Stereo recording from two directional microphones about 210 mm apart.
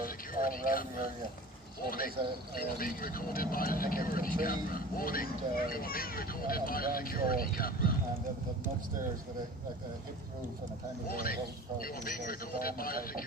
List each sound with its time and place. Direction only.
0.0 s a sound: 45° left (ahead or behind)
1.9 s speech: 45° left (ahead or behind)
11.1 s speech: 45° left (ahead or behind)